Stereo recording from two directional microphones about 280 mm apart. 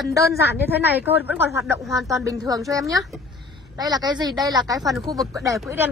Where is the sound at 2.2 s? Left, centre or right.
Centre.